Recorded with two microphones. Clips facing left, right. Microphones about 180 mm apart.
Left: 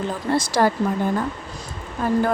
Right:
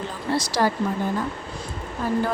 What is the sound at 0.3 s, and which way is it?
Speech, 50° left (ahead or behind).